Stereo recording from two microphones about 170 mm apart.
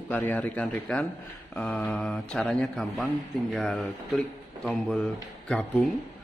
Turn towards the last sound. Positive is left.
turn(degrees=10)  # may be behind; listen again after turning